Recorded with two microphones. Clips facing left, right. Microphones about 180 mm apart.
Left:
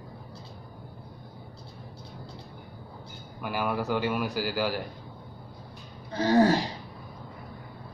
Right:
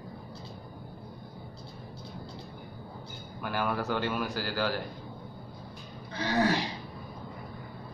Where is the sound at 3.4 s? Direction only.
10° left (ahead or behind).